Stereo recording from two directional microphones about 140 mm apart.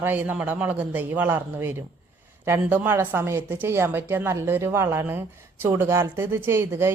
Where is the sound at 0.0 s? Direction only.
15° right (ahead or behind).